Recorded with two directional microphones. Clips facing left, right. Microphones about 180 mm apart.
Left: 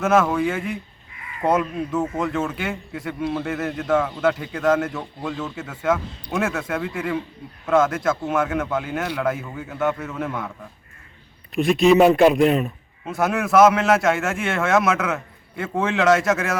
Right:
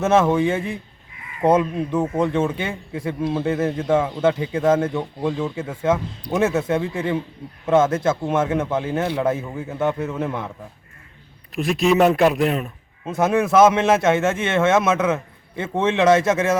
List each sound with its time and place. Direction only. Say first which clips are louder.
0.0 s a man's voice: right 2 dB; 25° right (ahead or behind)
11.5 s a man's voice: left 3 dB; centre (ahead or behind)
13.1 s a man's voice: right 3 dB; 25° right (ahead or behind)